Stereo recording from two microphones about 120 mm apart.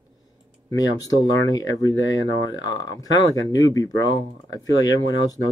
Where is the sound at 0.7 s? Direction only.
30° left (ahead or behind).